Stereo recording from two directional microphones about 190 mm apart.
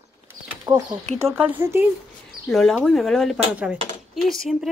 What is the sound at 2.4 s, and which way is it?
Speech, 5° left (ahead or behind).